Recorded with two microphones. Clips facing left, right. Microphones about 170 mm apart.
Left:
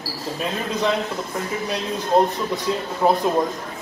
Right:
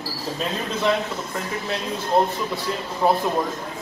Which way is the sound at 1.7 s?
20° left (ahead or behind).